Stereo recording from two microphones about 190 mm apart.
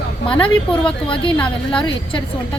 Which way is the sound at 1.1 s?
25° left (ahead or behind).